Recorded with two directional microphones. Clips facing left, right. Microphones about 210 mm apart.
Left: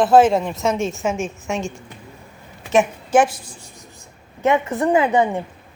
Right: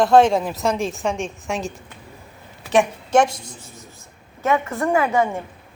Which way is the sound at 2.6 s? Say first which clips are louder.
Left 1 dB; 5° left (ahead or behind).